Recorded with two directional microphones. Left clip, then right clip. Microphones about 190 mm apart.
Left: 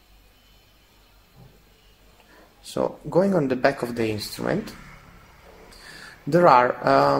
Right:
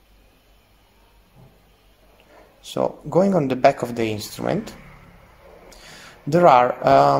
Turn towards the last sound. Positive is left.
turn(degrees=-30)  # may be behind; listen again after turning